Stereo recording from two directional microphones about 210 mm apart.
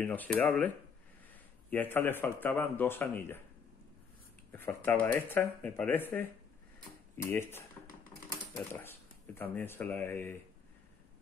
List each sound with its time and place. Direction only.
0.0 s speech: 5° left (ahead or behind)
1.7 s speech: 10° left (ahead or behind)
4.5 s speech: 10° left (ahead or behind)
7.2 s speech: 10° left (ahead or behind)